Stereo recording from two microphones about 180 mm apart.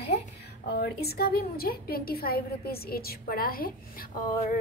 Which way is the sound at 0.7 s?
60° left (ahead or behind).